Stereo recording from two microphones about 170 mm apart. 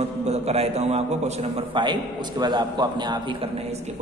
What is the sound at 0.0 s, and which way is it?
A man's voice, 40° right (ahead or behind).